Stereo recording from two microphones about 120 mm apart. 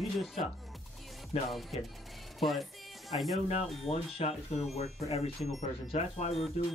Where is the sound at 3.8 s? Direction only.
55° left (ahead or behind).